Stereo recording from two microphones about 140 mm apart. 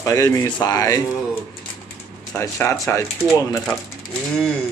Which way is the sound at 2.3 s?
20° left (ahead or behind).